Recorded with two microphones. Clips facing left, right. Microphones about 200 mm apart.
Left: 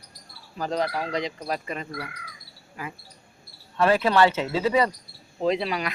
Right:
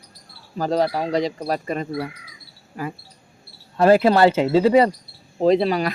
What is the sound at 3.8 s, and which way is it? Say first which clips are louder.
Frog: right 6 dB; 35° right (ahead or behind).